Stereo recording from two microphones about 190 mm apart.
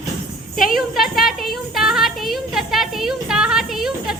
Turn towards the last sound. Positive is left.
turn(degrees=0)  # may be behind; listen again after turning